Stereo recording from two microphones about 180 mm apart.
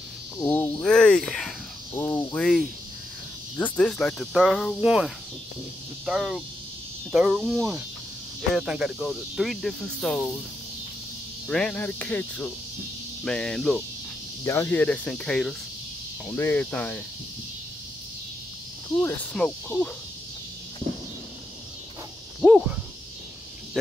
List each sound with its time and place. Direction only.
0.4 s cricket: 10° left (ahead or behind)
2.0 s cricket: 15° left (ahead or behind)
2.3 s cricket: 5° left (ahead or behind)
11.4 s cricket: 5° left (ahead or behind)
14.4 s cricket: 15° left (ahead or behind)
18.9 s cricket: 5° left (ahead or behind)
22.4 s speech: 5° right (ahead or behind)